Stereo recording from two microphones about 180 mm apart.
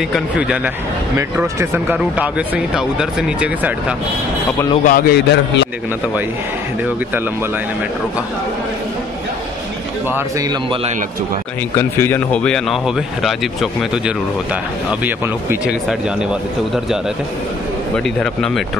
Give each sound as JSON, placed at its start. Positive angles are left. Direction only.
{"t": 0.1, "sound": "speech", "side_deg": -5}
{"t": 4.8, "sound": "a man's voice", "side_deg": 55}
{"t": 11.7, "sound": "speech", "side_deg": 15}